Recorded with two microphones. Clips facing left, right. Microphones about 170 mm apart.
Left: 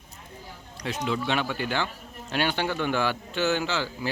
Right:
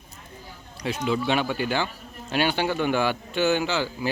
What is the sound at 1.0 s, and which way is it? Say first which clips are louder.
A man's voice: right 3 dB; 10° right (ahead or behind).